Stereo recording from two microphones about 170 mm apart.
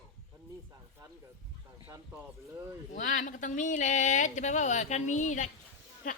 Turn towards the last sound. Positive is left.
turn(degrees=45)  # may be behind; listen again after turning